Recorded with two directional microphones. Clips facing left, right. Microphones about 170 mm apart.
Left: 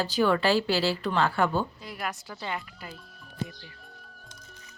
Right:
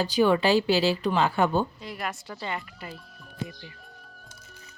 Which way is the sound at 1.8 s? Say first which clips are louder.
Right 1 dB; centre (ahead or behind).